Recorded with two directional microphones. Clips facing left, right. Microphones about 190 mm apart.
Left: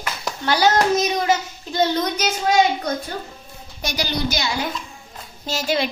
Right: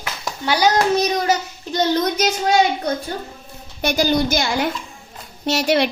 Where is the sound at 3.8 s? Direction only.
50° right (ahead or behind).